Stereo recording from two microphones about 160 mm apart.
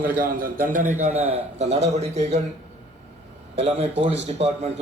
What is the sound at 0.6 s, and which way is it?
Speech, 10° right (ahead or behind).